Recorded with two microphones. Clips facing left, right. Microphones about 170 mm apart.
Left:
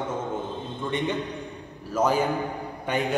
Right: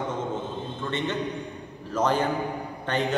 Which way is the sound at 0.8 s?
15° left (ahead or behind).